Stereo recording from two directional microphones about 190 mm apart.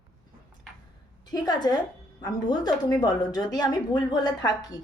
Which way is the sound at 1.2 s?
20° left (ahead or behind).